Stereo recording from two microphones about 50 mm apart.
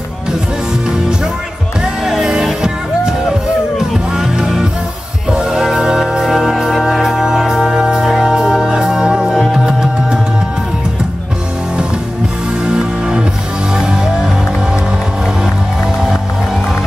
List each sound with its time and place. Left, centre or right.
0.8 s music: centre
12.6 s music: centre